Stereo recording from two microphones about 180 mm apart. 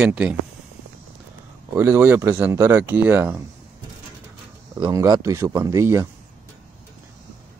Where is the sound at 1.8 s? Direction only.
15° right (ahead or behind).